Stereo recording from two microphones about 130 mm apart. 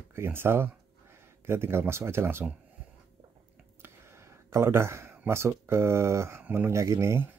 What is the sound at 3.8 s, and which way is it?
Speech, 20° right (ahead or behind).